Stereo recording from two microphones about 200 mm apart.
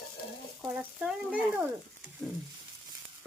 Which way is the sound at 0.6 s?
5° right (ahead or behind).